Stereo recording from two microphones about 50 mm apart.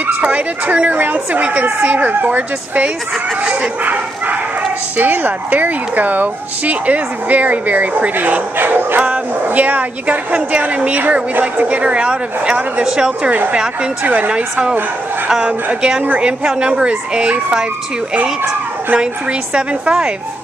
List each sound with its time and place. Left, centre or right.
0.0 s a woman's voice: right
9.0 s a woman's voice: right
13.3 s a woman's voice: right
14.3 s a woman's voice: centre
19.5 s a woman's voice: centre